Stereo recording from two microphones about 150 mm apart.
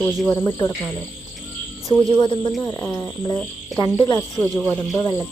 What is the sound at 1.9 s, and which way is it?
Speech, 25° left (ahead or behind).